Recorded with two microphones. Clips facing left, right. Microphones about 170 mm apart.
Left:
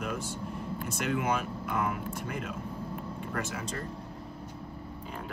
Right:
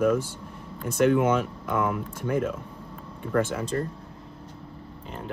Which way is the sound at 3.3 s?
55° right (ahead or behind).